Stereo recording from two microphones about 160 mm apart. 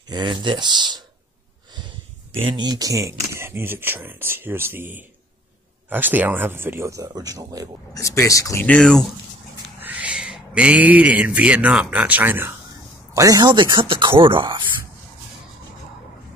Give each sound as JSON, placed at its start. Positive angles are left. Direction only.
{"t": 0.1, "sound": "speech", "side_deg": -30}
{"t": 2.4, "sound": "speech", "side_deg": -25}
{"t": 5.9, "sound": "speech", "side_deg": -10}
{"t": 7.9, "sound": "speech", "side_deg": 20}
{"t": 8.6, "sound": "speech", "side_deg": 5}
{"t": 9.8, "sound": "speech", "side_deg": -10}